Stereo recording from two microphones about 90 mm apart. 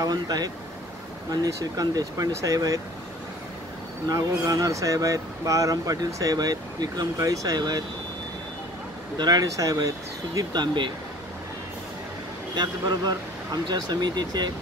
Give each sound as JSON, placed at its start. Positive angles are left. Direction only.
{"t": 0.0, "sound": "speech", "side_deg": -45}
{"t": 4.1, "sound": "speech", "side_deg": -40}
{"t": 9.2, "sound": "speech", "side_deg": -45}
{"t": 10.6, "sound": "speech", "side_deg": -60}
{"t": 12.5, "sound": "speech", "side_deg": -50}